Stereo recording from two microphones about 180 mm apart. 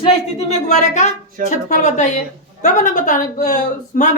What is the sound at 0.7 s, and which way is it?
A woman's voice, 40° left (ahead or behind).